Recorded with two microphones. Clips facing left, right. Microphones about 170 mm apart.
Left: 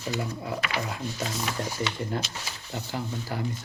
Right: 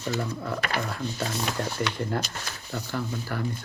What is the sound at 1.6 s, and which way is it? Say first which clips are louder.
Speech: right 2 dB; 10° left (ahead or behind).